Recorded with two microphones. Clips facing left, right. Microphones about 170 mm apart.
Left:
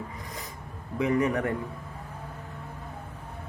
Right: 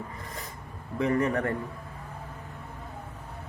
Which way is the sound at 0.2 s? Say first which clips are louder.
Even; 20° left (ahead or behind).